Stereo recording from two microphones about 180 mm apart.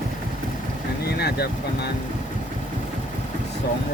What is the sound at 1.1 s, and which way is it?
Speech, 65° left (ahead or behind).